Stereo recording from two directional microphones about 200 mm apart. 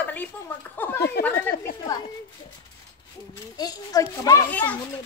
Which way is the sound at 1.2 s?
10° left (ahead or behind).